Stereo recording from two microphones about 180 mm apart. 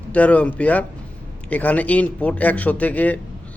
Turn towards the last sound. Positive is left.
turn(degrees=10)  # may be behind; listen again after turning